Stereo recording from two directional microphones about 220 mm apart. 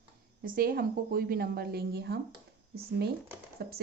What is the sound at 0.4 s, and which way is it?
A woman's voice, 40° right (ahead or behind).